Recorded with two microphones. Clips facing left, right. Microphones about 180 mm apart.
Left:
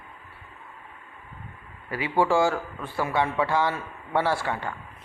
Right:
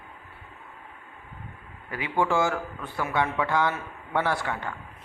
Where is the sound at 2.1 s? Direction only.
10° left (ahead or behind).